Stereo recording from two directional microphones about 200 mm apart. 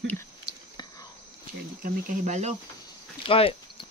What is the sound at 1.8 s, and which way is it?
Speech, 35° right (ahead or behind).